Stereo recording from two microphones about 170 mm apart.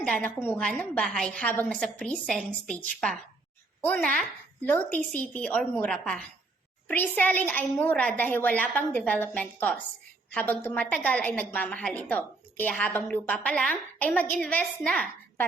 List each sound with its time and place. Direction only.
0.0 s a woman's voice: 10° left (ahead or behind)